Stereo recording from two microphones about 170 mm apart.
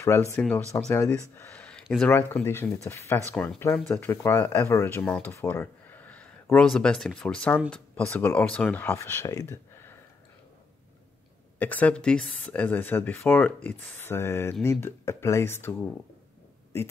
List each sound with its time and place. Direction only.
0.0 s speech: 15° left (ahead or behind)
11.5 s speech: 10° left (ahead or behind)